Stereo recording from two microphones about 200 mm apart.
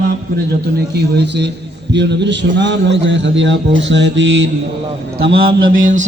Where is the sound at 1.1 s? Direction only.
60° right (ahead or behind).